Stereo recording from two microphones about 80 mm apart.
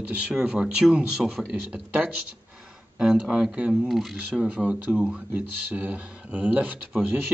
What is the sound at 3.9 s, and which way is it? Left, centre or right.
Speech, centre.